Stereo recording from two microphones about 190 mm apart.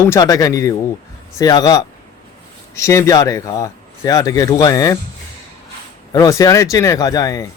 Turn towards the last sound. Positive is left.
turn(degrees=20)  # may be behind; listen again after turning